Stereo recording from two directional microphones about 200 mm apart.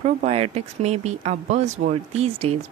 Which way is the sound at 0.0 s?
30° right (ahead or behind).